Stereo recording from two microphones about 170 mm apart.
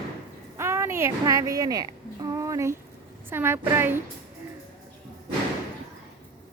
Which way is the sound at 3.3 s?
15° right (ahead or behind).